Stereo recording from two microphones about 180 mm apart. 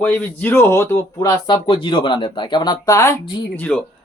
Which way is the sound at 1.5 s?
30° left (ahead or behind).